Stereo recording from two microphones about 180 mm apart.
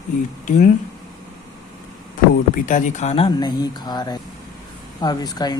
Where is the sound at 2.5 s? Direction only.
45° left (ahead or behind); by 5.5 s 20° left (ahead or behind).